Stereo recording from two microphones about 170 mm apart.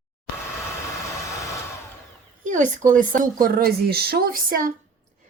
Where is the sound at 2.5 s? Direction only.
45° right (ahead or behind).